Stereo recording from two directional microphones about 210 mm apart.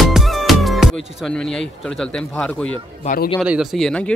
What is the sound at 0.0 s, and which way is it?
Speech, centre (ahead or behind).